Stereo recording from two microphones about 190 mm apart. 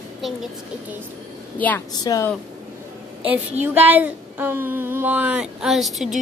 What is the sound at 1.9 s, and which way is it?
Speech, 20° left (ahead or behind).